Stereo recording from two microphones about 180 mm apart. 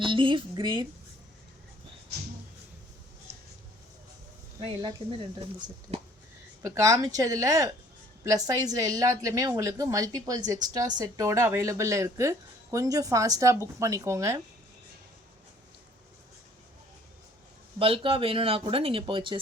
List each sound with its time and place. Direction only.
0.0 s a woman's voice: 25° right (ahead or behind)
4.6 s a woman's voice: 20° right (ahead or behind)
5.9 s a sound: 35° right (ahead or behind)
6.6 s a woman's voice: 15° right (ahead or behind)
17.7 s speech: 30° right (ahead or behind)